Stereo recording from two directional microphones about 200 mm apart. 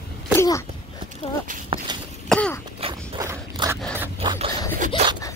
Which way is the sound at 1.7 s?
20° right (ahead or behind).